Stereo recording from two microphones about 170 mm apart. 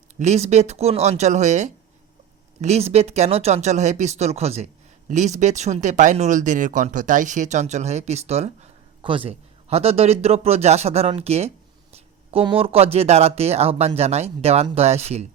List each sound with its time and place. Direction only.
0.2 s speech: 40° right (ahead or behind)